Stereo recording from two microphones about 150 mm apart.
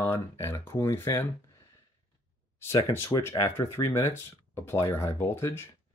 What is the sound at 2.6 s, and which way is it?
Speech, 15° left (ahead or behind).